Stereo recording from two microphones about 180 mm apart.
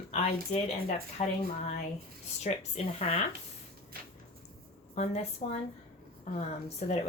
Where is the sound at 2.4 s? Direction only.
40° left (ahead or behind).